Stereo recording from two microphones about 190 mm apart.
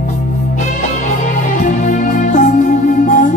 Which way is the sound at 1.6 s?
40° left (ahead or behind).